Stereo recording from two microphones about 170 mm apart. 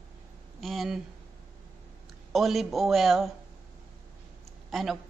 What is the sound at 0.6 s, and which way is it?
Speech, centre (ahead or behind).